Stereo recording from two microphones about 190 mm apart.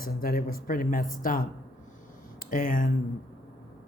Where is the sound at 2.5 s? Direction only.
45° left (ahead or behind).